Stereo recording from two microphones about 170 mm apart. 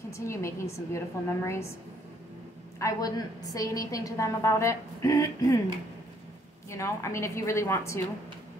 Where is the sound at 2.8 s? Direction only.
20° left (ahead or behind).